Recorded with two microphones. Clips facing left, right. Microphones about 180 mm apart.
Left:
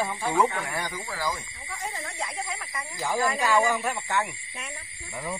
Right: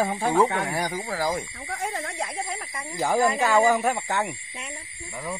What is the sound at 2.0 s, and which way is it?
Speech, 50° right (ahead or behind).